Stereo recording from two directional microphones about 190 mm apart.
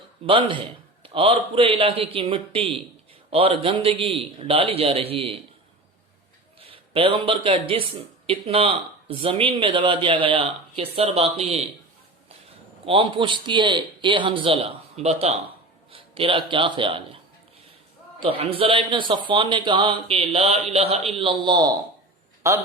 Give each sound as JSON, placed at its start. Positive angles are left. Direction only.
{"t": 0.3, "sound": "speech", "side_deg": -25}
{"t": 6.6, "sound": "a man's voice", "side_deg": -30}
{"t": 12.8, "sound": "speech", "side_deg": -25}
{"t": 18.2, "sound": "a man's voice", "side_deg": -25}